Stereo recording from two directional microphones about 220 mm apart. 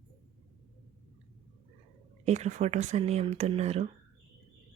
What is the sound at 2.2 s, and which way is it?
Speech, 30° right (ahead or behind).